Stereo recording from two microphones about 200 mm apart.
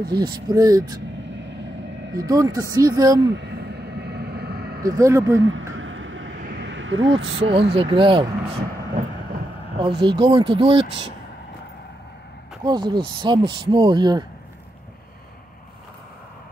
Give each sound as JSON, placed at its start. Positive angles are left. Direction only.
{"t": 0.1, "sound": "speech", "side_deg": -20}
{"t": 1.3, "sound": "vehicle", "side_deg": -65}
{"t": 2.1, "sound": "speech", "side_deg": -15}
{"t": 3.3, "sound": "vehicle", "side_deg": -55}
{"t": 4.8, "sound": "speech", "side_deg": -15}
{"t": 5.4, "sound": "a sound", "side_deg": -75}
{"t": 7.2, "sound": "speech", "side_deg": -30}
{"t": 9.0, "sound": "vehicle", "side_deg": -40}
{"t": 9.8, "sound": "speech", "side_deg": -25}
{"t": 12.6, "sound": "speech", "side_deg": -20}